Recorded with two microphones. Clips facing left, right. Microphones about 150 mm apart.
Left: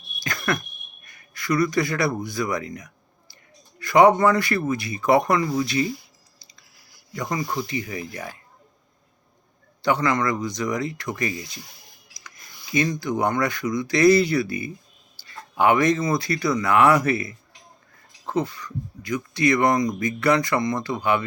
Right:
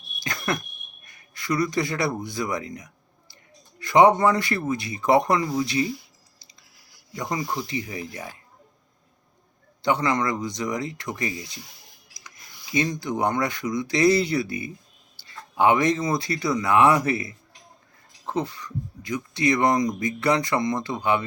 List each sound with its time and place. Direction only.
0.2 s a sound: 25° right (ahead or behind)
1.0 s speech: 25° right (ahead or behind)
7.1 s speech: 20° right (ahead or behind)
9.8 s speech: 25° right (ahead or behind)
12.2 s a sound: 25° right (ahead or behind)
12.9 s speech: 25° right (ahead or behind)
18.3 s speech: 25° right (ahead or behind)